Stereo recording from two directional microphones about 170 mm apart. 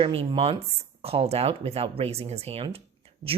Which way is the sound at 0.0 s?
35° right (ahead or behind).